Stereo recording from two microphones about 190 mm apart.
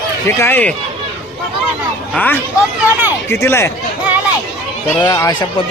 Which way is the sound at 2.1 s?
10° left (ahead or behind).